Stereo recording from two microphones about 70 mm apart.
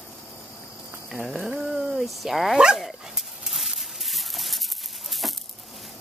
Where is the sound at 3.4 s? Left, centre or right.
Centre.